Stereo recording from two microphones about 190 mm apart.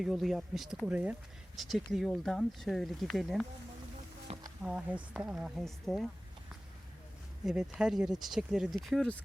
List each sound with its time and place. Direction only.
0.0 s speech: centre (ahead or behind)
4.3 s a sound: 35° right (ahead or behind)
4.6 s speech: 5° right (ahead or behind)
7.4 s speech: 5° right (ahead or behind)